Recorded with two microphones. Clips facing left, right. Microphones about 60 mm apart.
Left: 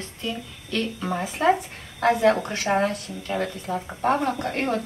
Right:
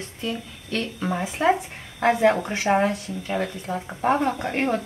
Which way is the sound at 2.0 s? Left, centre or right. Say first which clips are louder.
Even; centre.